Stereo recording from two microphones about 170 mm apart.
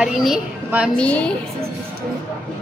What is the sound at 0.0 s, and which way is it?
Speech, 5° right (ahead or behind).